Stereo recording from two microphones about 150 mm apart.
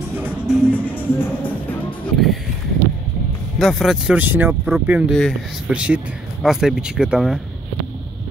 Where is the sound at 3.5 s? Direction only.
Centre (ahead or behind).